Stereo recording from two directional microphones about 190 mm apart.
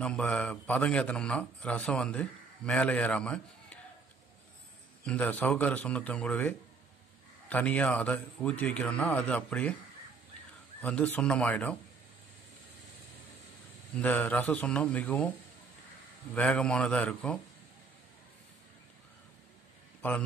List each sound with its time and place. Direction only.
0.0 s a man's voice: 5° left (ahead or behind)
5.0 s a man's voice: 5° left (ahead or behind)
10.8 s a man's voice: 5° left (ahead or behind)
13.9 s a man's voice: 10° left (ahead or behind)
16.3 s a man's voice: 5° left (ahead or behind)
20.0 s a man's voice: 10° left (ahead or behind)